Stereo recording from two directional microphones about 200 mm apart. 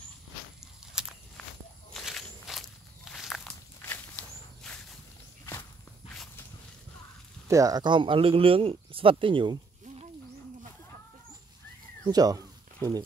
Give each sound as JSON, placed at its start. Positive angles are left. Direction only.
{"t": 0.9, "sound": "walk", "side_deg": -5}
{"t": 7.4, "sound": "speech", "side_deg": -15}
{"t": 12.1, "sound": "speech", "side_deg": -20}